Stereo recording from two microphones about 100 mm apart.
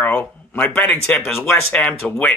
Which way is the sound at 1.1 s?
5° left (ahead or behind).